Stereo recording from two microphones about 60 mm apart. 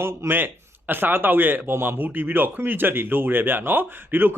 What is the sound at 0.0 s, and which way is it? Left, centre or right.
Speech, right.